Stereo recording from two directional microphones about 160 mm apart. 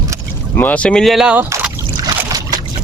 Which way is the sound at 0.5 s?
10° left (ahead or behind).